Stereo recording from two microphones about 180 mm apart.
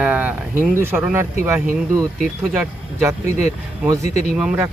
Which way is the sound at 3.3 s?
40° left (ahead or behind).